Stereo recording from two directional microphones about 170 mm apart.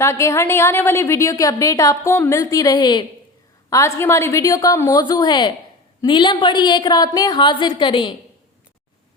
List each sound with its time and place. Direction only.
0.0 s a woman's voice: 15° left (ahead or behind)